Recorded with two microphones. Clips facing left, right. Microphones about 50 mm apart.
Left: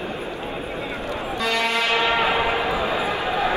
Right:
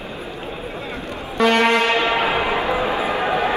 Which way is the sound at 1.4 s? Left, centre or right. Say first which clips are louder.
Right 8 dB; right.